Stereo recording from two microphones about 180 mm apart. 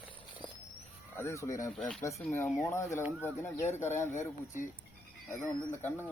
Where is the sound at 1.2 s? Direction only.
15° left (ahead or behind).